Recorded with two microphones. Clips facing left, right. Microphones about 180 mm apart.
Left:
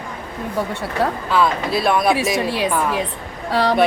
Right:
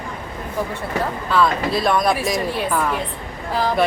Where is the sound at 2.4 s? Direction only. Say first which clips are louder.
Left 2 dB; 80° left.